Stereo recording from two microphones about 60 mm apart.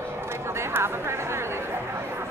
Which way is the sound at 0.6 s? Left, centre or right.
Right.